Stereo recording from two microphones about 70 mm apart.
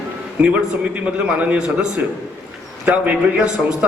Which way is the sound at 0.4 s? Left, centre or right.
Centre.